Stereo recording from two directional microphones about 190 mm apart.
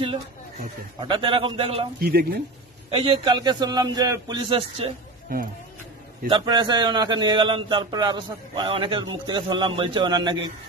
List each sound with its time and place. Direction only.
1.0 s a man's voice: 25° right (ahead or behind)
2.0 s speech: 55° right (ahead or behind)
2.9 s a man's voice: 30° right (ahead or behind)
6.3 s a man's voice: 25° right (ahead or behind)